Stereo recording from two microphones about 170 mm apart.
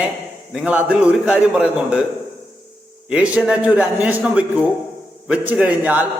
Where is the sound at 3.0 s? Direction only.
5° right (ahead or behind).